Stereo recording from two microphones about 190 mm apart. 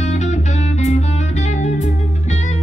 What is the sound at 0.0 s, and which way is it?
Music, 35° left (ahead or behind).